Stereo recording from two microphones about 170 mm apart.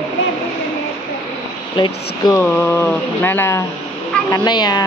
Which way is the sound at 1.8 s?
25° left (ahead or behind).